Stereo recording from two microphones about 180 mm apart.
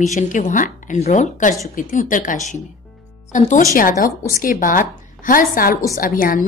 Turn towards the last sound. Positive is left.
turn(degrees=50)  # may be behind; listen again after turning